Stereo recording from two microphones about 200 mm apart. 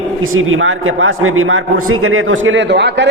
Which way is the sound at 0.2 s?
90° right.